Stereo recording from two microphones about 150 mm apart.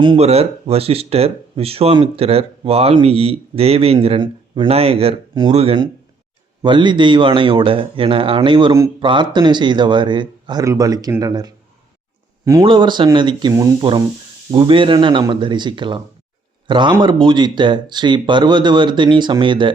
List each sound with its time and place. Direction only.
0.2 s speech: 45° right (ahead or behind)
6.6 s speech: 30° right (ahead or behind)
12.6 s speech: 30° right (ahead or behind)